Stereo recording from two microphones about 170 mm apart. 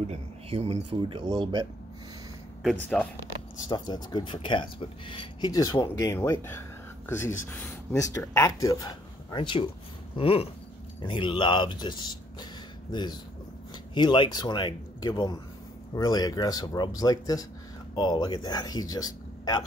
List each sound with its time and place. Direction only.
0.1 s speech: 40° right (ahead or behind)
2.6 s speech: 5° left (ahead or behind)
3.6 s speech: 25° left (ahead or behind)
10.1 s a sound: 35° left (ahead or behind)
11.0 s speech: 30° left (ahead or behind)